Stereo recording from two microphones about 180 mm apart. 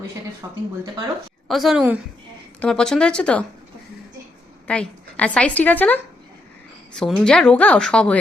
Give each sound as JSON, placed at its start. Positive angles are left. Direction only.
{"t": 0.4, "sound": "speech", "side_deg": -15}
{"t": 1.5, "sound": "a woman's voice", "side_deg": 0}
{"t": 4.6, "sound": "a woman's voice", "side_deg": 5}